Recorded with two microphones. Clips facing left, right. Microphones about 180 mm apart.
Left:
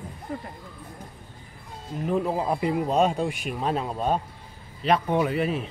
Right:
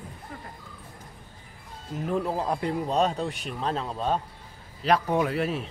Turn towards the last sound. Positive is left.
turn(degrees=0)  # may be behind; listen again after turning